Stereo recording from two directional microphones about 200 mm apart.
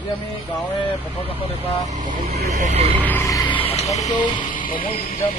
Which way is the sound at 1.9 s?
40° right (ahead or behind).